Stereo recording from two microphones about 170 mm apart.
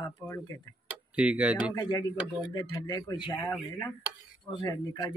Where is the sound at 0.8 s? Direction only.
5° right (ahead or behind).